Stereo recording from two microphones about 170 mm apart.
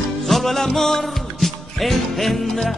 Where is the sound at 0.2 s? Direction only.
Centre (ahead or behind).